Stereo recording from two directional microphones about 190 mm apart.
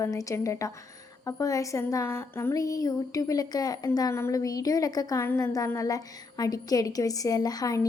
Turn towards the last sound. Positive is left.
turn(degrees=20)  # may be behind; listen again after turning